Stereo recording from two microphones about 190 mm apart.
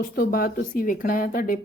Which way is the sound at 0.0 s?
50° left (ahead or behind).